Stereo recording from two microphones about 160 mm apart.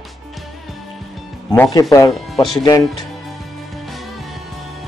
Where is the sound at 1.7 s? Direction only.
20° left (ahead or behind).